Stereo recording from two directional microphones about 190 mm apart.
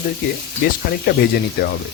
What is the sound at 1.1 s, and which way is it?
Speech, 55° left (ahead or behind).